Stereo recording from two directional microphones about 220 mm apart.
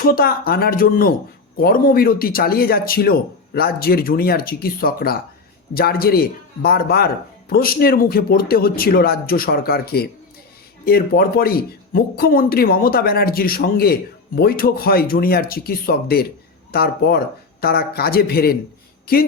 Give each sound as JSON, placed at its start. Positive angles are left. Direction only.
{"t": 0.0, "sound": "speech", "side_deg": 45}